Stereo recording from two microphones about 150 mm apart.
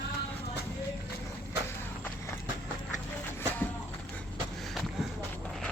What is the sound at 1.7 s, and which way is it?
Horse, 15° left (ahead or behind).